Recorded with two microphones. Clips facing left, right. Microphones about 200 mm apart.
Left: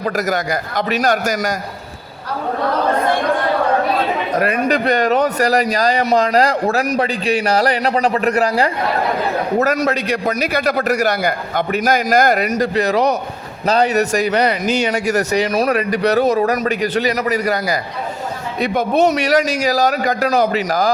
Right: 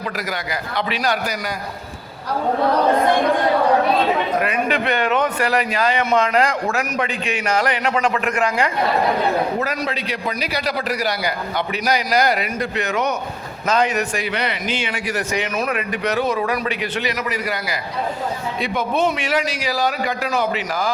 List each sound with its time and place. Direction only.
0.0 s a man's voice: 45° left (ahead or behind)
4.4 s a man's voice: 40° left (ahead or behind)